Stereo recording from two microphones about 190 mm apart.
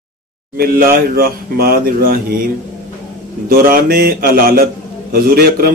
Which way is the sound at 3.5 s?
50° right (ahead or behind).